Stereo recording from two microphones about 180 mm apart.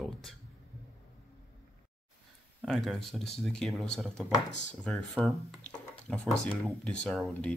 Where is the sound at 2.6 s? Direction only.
Centre (ahead or behind).